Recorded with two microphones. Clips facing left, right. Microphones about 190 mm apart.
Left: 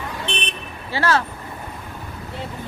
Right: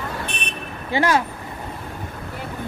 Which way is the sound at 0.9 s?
15° right (ahead or behind).